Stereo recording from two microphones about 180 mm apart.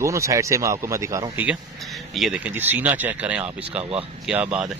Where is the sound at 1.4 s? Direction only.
Centre (ahead or behind).